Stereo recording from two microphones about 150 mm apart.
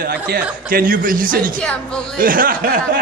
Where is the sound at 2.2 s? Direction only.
70° right (ahead or behind).